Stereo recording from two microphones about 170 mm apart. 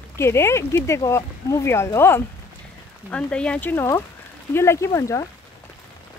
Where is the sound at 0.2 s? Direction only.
15° left (ahead or behind).